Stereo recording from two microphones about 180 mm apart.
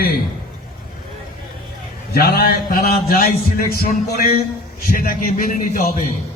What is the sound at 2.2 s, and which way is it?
A man's voice, 60° left (ahead or behind).